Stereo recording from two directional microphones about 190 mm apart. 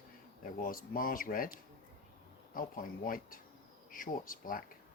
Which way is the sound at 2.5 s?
45° left (ahead or behind).